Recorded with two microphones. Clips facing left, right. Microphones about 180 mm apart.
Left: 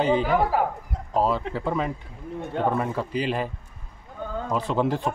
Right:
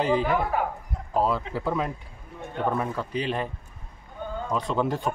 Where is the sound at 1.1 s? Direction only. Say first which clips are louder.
Left 1 dB; centre (ahead or behind).